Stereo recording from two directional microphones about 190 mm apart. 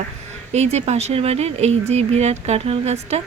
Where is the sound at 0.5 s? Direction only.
35° right (ahead or behind).